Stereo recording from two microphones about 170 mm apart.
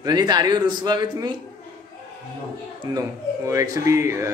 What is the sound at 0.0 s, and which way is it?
Speech, 25° right (ahead or behind).